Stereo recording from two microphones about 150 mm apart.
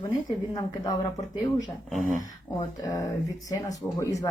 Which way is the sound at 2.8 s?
25° left (ahead or behind).